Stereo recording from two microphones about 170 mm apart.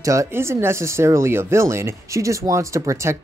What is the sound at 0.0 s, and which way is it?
Speech, 20° right (ahead or behind).